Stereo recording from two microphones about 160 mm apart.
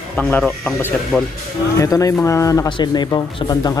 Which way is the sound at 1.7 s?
20° left (ahead or behind).